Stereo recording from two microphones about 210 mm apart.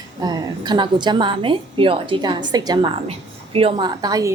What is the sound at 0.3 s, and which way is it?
A woman's voice, 20° right (ahead or behind).